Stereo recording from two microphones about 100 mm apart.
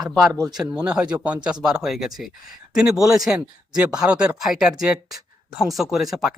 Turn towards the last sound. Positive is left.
turn(degrees=-5)  # may be behind; listen again after turning